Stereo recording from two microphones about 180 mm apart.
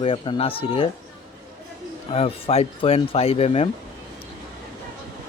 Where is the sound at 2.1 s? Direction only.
35° left (ahead or behind).